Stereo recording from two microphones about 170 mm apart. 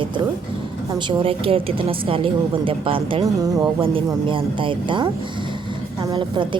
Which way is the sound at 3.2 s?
20° right (ahead or behind).